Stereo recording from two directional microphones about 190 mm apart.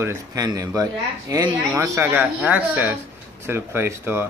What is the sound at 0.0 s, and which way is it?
A man's voice, 15° right (ahead or behind).